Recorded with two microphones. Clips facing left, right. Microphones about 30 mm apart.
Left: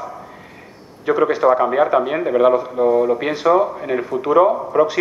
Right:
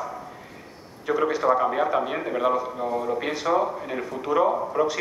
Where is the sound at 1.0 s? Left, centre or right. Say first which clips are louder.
Left 7 dB; left.